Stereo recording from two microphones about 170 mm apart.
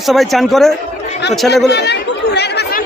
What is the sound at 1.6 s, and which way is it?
Chatter, 80° left.